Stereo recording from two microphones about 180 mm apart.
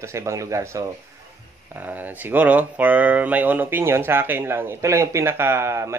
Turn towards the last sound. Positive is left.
turn(degrees=-15)  # may be behind; listen again after turning